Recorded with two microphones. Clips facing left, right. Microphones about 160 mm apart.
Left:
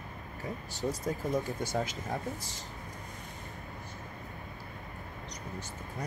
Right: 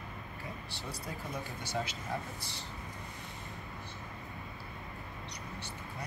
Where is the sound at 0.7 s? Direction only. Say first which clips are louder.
Left 9 dB; 45° left (ahead or behind).